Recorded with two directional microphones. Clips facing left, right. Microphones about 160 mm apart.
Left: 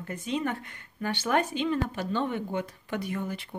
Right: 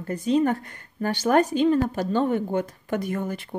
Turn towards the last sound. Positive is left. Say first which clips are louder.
# right 5 dB
turn(degrees=-45)  # may be behind; listen again after turning